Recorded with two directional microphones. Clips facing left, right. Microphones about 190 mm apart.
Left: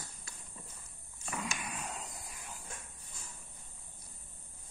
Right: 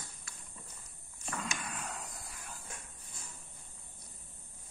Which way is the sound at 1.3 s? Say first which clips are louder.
Left 1 dB; 15° left (ahead or behind).